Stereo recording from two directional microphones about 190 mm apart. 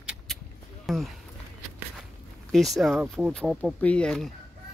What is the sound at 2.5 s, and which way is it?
A woman's voice, centre (ahead or behind).